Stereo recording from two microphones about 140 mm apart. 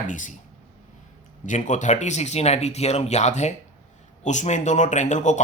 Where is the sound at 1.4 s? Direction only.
60° left (ahead or behind).